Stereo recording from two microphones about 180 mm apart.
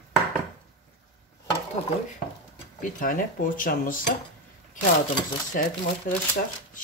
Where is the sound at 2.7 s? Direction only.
50° left (ahead or behind).